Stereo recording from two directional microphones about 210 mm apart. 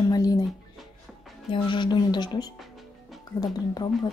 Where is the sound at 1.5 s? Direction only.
20° left (ahead or behind).